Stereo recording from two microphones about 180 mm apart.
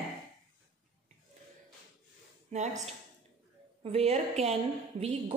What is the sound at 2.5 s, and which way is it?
Speech, 35° right (ahead or behind).